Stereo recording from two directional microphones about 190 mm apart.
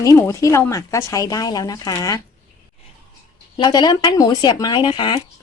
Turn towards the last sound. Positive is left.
turn(degrees=25)  # may be behind; listen again after turning